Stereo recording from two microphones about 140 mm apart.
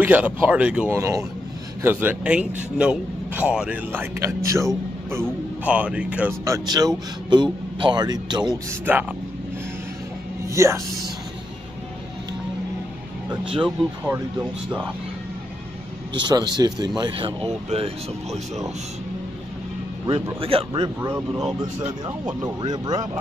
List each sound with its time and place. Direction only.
0.0 s a man's voice: 15° right (ahead or behind)
0.9 s a man's voice: 20° right (ahead or behind)
5.6 s a man's voice: 10° right (ahead or behind)
6.4 s speech: 25° right (ahead or behind)
8.9 s a man's voice: 15° right (ahead or behind)
10.4 s music: 20° right (ahead or behind)
13.3 s speech: 35° right (ahead or behind)
16.2 s speech: 30° right (ahead or behind)
17.4 s speech: 45° right (ahead or behind)
20.3 s speech: 40° right (ahead or behind)
22.4 s speech: 30° right (ahead or behind)